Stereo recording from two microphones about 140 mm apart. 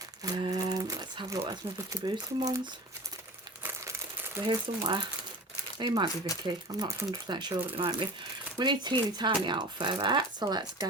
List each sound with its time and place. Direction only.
0.2 s speech: 25° right (ahead or behind)
0.6 s a sound: 25° right (ahead or behind)
1.5 s speech: 25° right (ahead or behind)
4.4 s speech: 30° right (ahead or behind)